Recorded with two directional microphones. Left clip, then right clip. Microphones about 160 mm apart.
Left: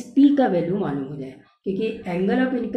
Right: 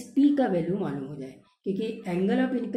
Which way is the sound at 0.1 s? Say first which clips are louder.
Left 6 dB; 5° right (ahead or behind).